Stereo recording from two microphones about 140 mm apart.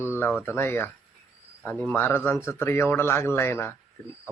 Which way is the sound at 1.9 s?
15° left (ahead or behind).